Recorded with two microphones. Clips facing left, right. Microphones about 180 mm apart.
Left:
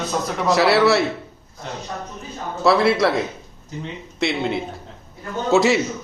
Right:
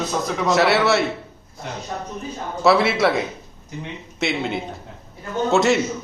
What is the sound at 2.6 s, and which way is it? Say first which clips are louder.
Speech: even; centre (ahead or behind).